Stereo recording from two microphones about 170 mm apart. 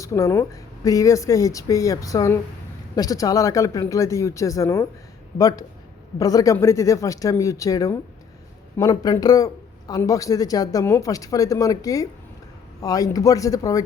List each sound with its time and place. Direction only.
0.0 s speech: 15° left (ahead or behind)